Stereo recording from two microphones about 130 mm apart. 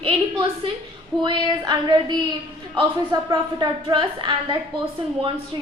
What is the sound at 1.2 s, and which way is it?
A woman's voice, 35° right (ahead or behind).